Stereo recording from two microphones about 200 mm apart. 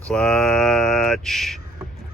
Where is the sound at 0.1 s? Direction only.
5° left (ahead or behind).